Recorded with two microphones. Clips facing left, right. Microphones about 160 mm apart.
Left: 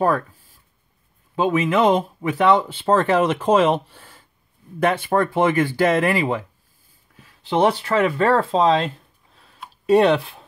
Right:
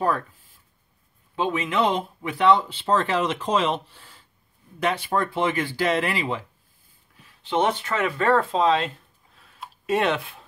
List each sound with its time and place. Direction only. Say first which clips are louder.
1.3 s speech: left 6 dB; 45° left (ahead or behind)
7.4 s speech: left 5 dB; 35° left (ahead or behind)